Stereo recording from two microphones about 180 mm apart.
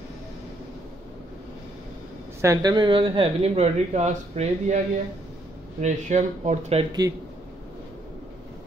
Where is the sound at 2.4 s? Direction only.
20° right (ahead or behind); by 6.9 s 35° right (ahead or behind).